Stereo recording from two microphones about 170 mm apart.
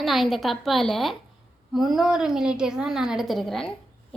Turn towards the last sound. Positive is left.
turn(degrees=0)  # may be behind; listen again after turning